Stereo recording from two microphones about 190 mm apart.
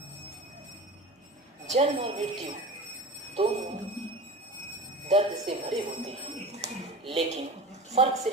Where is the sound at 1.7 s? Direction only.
35° right (ahead or behind).